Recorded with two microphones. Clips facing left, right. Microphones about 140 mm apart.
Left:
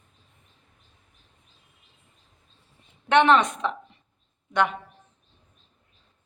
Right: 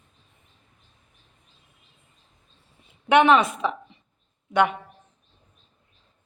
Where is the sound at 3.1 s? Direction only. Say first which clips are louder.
Right 1 dB; 10° right (ahead or behind).